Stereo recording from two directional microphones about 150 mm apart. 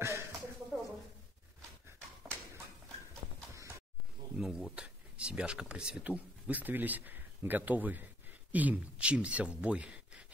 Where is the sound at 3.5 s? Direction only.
20° right (ahead or behind).